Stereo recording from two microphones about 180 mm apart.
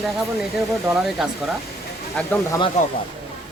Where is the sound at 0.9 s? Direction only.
Centre (ahead or behind).